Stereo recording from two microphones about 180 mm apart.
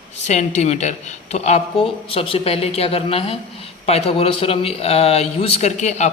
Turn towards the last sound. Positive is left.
turn(degrees=40)  # may be behind; listen again after turning